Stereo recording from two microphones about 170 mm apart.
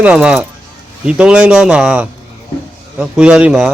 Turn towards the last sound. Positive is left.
turn(degrees=-5)  # may be behind; listen again after turning